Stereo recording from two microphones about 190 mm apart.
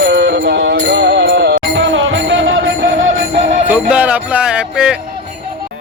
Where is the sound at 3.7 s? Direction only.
10° right (ahead or behind).